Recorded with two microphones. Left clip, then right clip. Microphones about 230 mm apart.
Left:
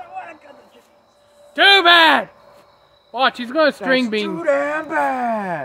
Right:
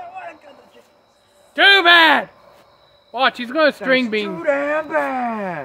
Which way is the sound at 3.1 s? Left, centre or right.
Centre.